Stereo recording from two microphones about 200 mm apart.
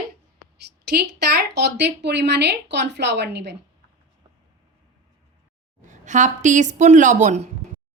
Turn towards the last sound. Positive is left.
turn(degrees=-35)  # may be behind; listen again after turning